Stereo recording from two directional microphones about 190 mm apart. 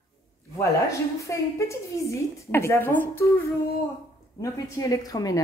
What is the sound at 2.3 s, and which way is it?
A woman's voice, 15° left (ahead or behind).